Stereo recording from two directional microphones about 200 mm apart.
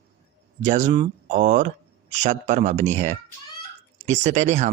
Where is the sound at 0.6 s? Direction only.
35° right (ahead or behind).